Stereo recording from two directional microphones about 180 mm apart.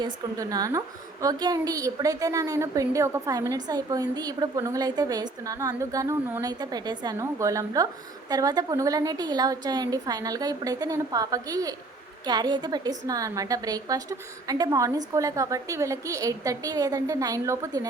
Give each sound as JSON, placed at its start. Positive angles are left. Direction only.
{"t": 0.0, "sound": "a woman's voice", "side_deg": -20}